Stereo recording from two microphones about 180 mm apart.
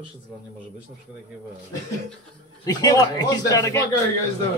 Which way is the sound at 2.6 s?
20° left (ahead or behind).